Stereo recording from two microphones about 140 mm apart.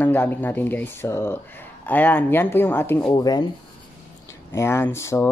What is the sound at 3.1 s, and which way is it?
Speech, 25° left (ahead or behind).